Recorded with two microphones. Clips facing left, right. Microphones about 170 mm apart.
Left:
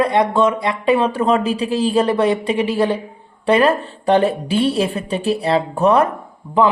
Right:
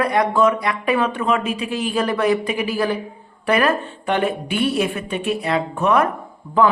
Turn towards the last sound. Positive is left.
turn(degrees=20)  # may be behind; listen again after turning